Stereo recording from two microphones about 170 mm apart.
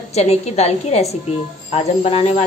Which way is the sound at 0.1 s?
40° left (ahead or behind).